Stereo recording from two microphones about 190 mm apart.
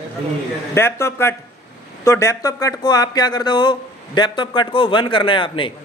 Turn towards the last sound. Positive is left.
turn(degrees=25)  # may be behind; listen again after turning